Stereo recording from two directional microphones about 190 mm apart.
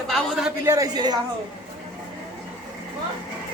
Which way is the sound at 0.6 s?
20° right (ahead or behind).